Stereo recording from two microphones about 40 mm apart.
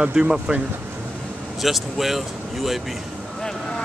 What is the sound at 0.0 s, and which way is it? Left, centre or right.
Speech, centre.